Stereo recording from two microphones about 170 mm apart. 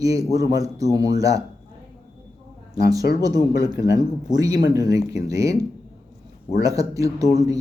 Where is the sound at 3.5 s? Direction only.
20° right (ahead or behind).